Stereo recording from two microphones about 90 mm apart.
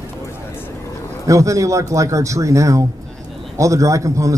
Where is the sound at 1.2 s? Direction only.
35° right (ahead or behind).